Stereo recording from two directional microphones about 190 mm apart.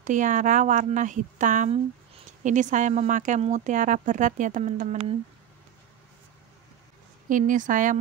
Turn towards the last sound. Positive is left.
turn(degrees=-45)  # may be behind; listen again after turning